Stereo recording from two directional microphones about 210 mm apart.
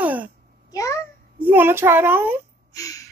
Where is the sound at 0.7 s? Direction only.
15° left (ahead or behind).